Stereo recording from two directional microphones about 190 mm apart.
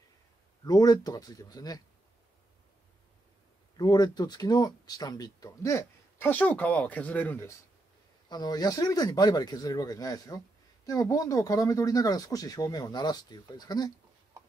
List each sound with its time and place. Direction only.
0.7 s speech: 20° left (ahead or behind)
3.7 s speech: 20° left (ahead or behind)
8.3 s speech: 20° left (ahead or behind)